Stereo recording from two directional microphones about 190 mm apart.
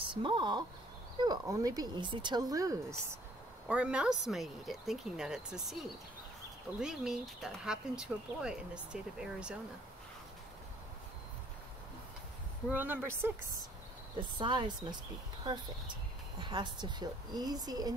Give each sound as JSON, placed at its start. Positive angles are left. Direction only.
{"t": 0.0, "sound": "speech", "side_deg": -25}
{"t": 3.6, "sound": "speech", "side_deg": -5}
{"t": 12.7, "sound": "speech", "side_deg": -10}
{"t": 14.4, "sound": "speech", "side_deg": -25}
{"t": 16.3, "sound": "speech", "side_deg": -25}